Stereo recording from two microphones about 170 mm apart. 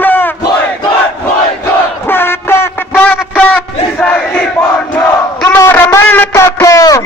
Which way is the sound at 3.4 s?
10° left (ahead or behind).